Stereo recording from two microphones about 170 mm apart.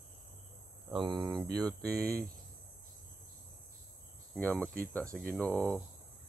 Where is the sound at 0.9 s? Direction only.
30° right (ahead or behind).